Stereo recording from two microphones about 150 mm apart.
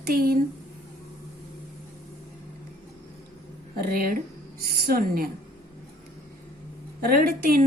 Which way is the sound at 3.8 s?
75° right (ahead or behind).